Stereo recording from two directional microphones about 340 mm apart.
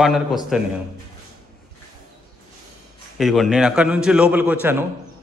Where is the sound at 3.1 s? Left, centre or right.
Centre.